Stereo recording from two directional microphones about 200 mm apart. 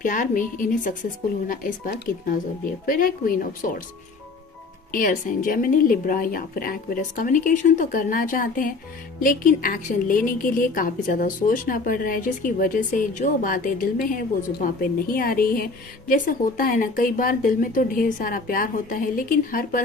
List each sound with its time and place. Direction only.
0.0 s a woman's voice: 40° left (ahead or behind)
4.9 s a woman's voice: 45° left (ahead or behind)